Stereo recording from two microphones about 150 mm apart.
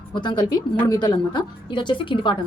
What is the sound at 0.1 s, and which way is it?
A woman's voice, 30° left (ahead or behind).